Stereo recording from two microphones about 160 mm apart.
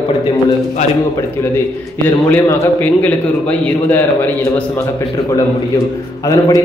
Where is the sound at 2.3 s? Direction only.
10° left (ahead or behind).